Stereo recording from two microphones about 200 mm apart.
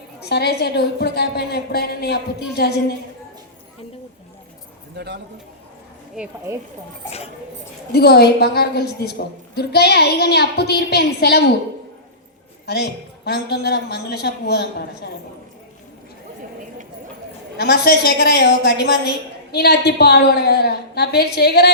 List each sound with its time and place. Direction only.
0.3 s a woman's voice: 55° left (ahead or behind)
4.9 s speech: 60° right (ahead or behind)
6.2 s speech: 5° right (ahead or behind)
7.9 s a woman's voice: 55° left (ahead or behind)
12.6 s a woman's voice: 55° left (ahead or behind)
17.6 s a woman's voice: 50° left (ahead or behind)